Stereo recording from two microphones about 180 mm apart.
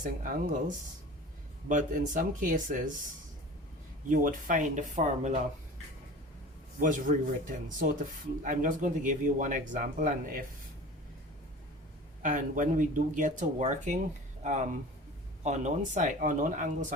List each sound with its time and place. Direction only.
0.0 s speech: 45° right (ahead or behind)
4.1 s speech: 50° right (ahead or behind)
6.7 s speech: 50° right (ahead or behind)
12.2 s speech: 50° right (ahead or behind)